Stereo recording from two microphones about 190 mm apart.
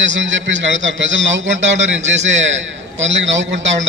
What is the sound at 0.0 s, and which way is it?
A man's voice, 75° right (ahead or behind).